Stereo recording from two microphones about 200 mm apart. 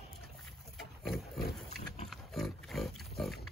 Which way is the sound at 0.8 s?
Centre (ahead or behind).